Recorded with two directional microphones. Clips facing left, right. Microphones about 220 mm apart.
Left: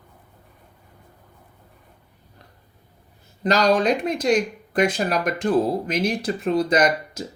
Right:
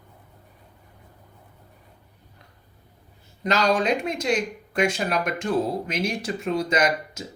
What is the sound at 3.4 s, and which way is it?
Speech, 35° left (ahead or behind).